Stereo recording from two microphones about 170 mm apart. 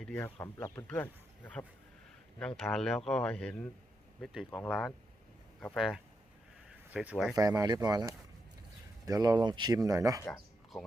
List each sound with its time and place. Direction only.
0.0 s speech: 10° left (ahead or behind)
0.3 s speech: 20° left (ahead or behind)
0.9 s speech: 10° left (ahead or behind)
7.3 s speech: 20° right (ahead or behind)
10.3 s a sound: centre (ahead or behind)